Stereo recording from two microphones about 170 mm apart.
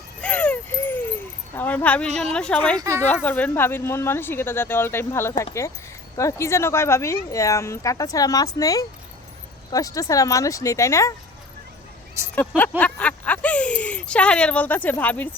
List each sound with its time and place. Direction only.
0.2 s a sound: 10° left (ahead or behind)
1.5 s a woman's voice: 10° left (ahead or behind)
2.7 s speech: 20° right (ahead or behind)
3.2 s speech: 10° left (ahead or behind)
12.3 s speech: 10° left (ahead or behind)